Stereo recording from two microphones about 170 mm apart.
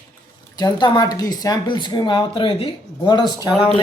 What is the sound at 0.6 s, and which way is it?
A woman's voice, 25° left (ahead or behind).